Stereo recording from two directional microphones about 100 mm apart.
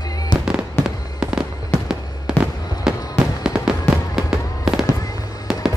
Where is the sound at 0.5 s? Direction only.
5° right (ahead or behind).